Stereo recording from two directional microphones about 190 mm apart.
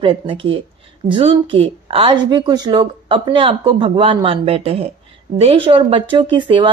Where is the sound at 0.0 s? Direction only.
30° right (ahead or behind).